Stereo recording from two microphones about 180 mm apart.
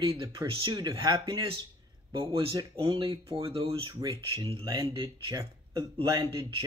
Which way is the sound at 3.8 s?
20° right (ahead or behind).